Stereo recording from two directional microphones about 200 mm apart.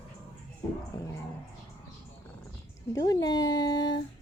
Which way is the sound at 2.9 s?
20° left (ahead or behind).